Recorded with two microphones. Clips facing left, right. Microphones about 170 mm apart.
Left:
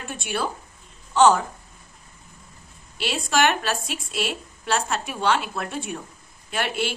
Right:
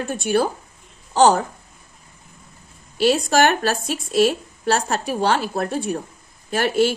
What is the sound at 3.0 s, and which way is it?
A woman's voice, 40° right (ahead or behind).